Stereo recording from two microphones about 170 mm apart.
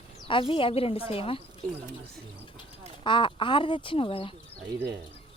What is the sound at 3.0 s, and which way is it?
Speech, 30° left (ahead or behind).